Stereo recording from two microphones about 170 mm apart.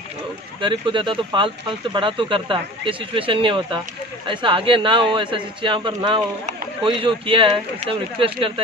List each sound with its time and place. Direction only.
0.6 s speech: 30° right (ahead or behind)